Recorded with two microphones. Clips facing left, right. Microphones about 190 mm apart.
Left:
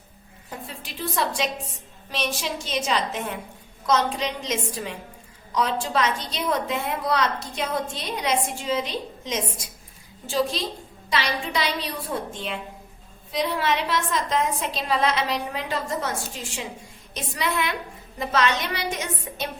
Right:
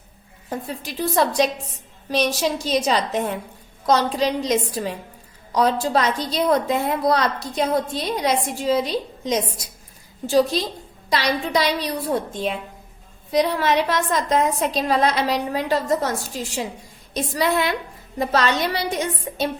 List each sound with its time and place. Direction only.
0.9 s a woman's voice: 40° right (ahead or behind)
13.3 s a woman's voice: 40° right (ahead or behind)